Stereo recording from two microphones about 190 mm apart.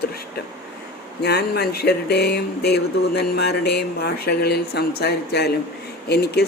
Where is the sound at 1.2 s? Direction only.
55° left (ahead or behind).